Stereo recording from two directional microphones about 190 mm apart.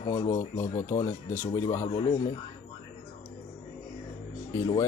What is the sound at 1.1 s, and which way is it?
Speech, 40° left (ahead or behind).